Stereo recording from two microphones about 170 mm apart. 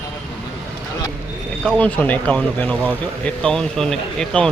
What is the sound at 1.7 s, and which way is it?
Speech, 10° left (ahead or behind).